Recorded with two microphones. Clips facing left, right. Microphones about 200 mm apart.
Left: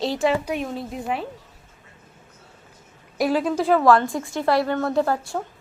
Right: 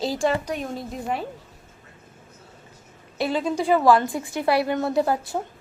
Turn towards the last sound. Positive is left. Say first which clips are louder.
# even
turn(degrees=-20)  # may be behind; listen again after turning